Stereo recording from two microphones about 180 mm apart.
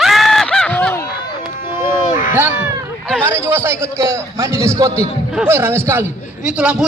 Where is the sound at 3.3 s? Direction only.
15° right (ahead or behind).